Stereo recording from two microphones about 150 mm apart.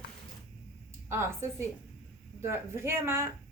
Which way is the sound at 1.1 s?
15° right (ahead or behind).